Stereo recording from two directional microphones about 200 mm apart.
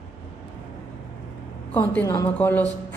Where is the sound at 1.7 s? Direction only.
10° left (ahead or behind).